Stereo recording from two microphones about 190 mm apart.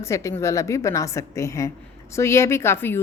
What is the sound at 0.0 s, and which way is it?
A woman's voice, 15° left (ahead or behind).